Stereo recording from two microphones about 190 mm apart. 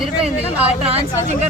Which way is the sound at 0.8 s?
30° right (ahead or behind).